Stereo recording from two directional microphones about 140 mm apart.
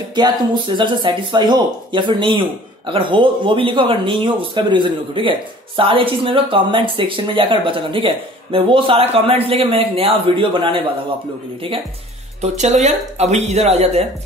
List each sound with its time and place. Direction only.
0.7 s speech: 35° right (ahead or behind)
12.4 s speech: 55° right (ahead or behind)